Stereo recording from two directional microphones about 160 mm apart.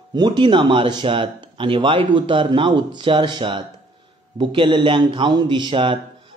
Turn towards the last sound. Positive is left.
turn(degrees=-30)  # may be behind; listen again after turning